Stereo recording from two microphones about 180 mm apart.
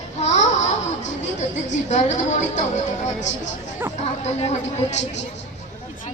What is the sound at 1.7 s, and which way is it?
Speech, 40° left (ahead or behind).